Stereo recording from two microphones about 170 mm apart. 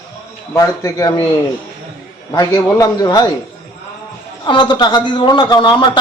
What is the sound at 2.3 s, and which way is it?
Speech, 20° left (ahead or behind).